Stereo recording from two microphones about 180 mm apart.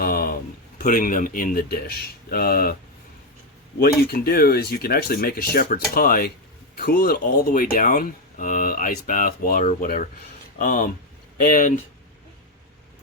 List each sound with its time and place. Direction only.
0.0 s a sound: 55° left (ahead or behind)
0.8 s speech: 50° left (ahead or behind)
3.8 s speech: 60° left (ahead or behind)